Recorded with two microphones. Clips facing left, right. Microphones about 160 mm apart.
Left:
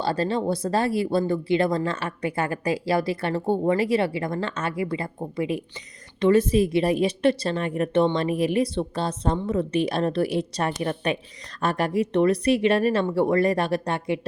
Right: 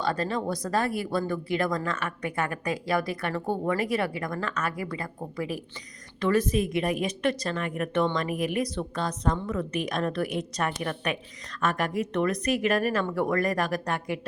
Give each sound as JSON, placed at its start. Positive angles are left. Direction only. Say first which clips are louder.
{"t": 0.0, "sound": "a woman's voice", "louder": "left 4 dB", "side_deg": 30}